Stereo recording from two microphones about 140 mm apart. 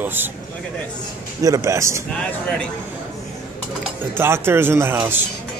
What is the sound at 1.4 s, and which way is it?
Speech, 25° right (ahead or behind).